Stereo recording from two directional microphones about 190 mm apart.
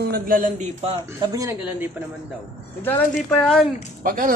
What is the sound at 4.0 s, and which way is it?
Speech, 45° right (ahead or behind).